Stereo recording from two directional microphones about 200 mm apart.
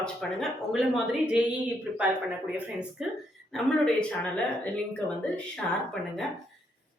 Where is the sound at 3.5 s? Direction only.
5° left (ahead or behind).